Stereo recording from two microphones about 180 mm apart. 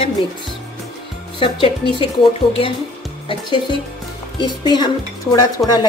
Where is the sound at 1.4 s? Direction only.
30° left (ahead or behind).